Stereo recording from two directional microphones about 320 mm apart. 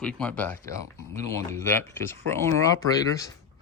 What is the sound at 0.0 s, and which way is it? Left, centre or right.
Speech, centre.